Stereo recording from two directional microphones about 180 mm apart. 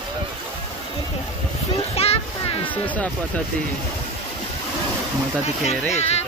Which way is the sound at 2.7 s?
10° left (ahead or behind).